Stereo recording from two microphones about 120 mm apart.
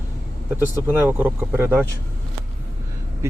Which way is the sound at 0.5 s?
20° right (ahead or behind).